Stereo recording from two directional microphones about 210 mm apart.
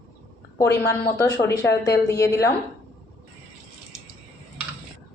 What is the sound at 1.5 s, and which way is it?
Speech, 50° left (ahead or behind).